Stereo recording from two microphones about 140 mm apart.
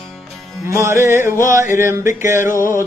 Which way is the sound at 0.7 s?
20° right (ahead or behind).